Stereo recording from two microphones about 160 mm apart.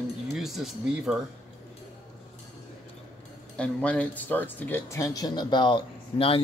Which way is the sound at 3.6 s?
5° left (ahead or behind).